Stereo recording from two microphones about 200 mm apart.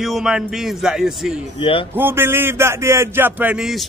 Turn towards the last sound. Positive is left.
turn(degrees=-5)  # may be behind; listen again after turning